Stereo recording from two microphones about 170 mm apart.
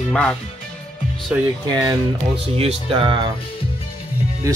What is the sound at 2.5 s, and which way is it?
Speech, 35° right (ahead or behind).